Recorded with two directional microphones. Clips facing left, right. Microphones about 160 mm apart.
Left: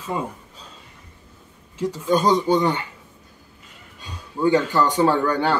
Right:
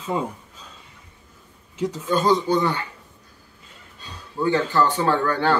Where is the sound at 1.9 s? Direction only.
15° left (ahead or behind).